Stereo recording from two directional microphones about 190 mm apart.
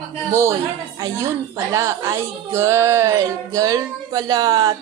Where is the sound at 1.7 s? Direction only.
15° right (ahead or behind).